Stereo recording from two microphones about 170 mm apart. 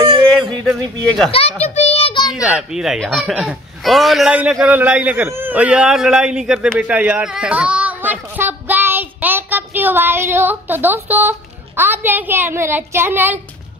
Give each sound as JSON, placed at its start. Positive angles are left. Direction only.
{"t": 0.0, "sound": "a sound", "side_deg": -25}
{"t": 1.6, "sound": "child singing", "side_deg": 40}
{"t": 2.4, "sound": "speech", "side_deg": -5}